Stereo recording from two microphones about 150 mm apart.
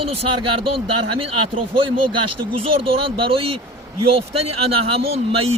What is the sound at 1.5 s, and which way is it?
Speech, 35° right (ahead or behind).